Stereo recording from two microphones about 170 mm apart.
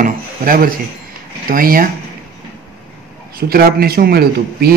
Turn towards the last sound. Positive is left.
turn(degrees=-65)  # may be behind; listen again after turning